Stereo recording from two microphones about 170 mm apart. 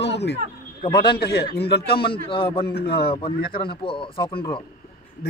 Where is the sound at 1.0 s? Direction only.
70° left (ahead or behind).